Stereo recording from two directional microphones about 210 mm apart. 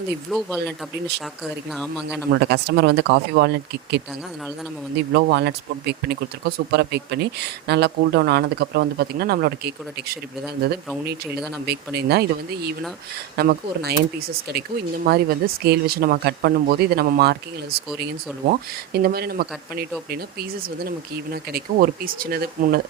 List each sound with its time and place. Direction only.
0.3 s speech: centre (ahead or behind)
1.7 s speech: centre (ahead or behind)
2.3 s speech: 55° right (ahead or behind)
5.1 s speech: 50° right (ahead or behind)
11.6 s speech: 50° right (ahead or behind)